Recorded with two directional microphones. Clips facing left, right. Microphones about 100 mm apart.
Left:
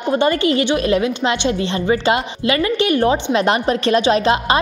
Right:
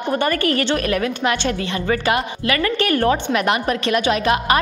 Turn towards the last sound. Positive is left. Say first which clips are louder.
# left 2 dB
turn(degrees=25)  # may be behind; listen again after turning